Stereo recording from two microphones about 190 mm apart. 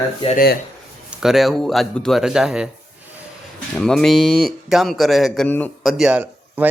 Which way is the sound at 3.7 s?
Centre (ahead or behind).